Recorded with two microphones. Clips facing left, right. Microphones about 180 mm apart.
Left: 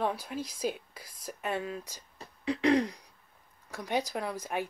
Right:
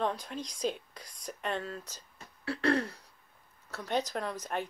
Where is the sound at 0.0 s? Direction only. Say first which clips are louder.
Left 1 dB; 10° left (ahead or behind).